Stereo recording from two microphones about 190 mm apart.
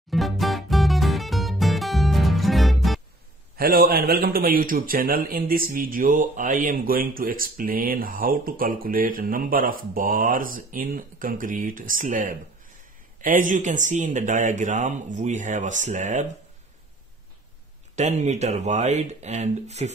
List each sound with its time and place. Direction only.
0.1 s music: centre (ahead or behind)
3.5 s a man's voice: 50° right (ahead or behind)
17.9 s speech: 35° right (ahead or behind)